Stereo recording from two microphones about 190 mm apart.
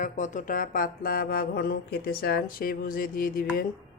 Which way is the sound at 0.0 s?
40° left (ahead or behind).